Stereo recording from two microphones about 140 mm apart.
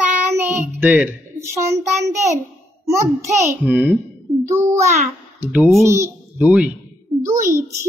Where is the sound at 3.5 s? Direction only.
10° right (ahead or behind).